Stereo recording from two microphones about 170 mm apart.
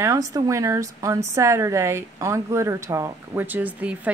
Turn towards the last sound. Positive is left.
turn(degrees=-10)  # may be behind; listen again after turning